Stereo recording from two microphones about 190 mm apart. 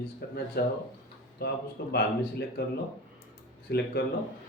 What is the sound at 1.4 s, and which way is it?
A man's voice, 55° left (ahead or behind).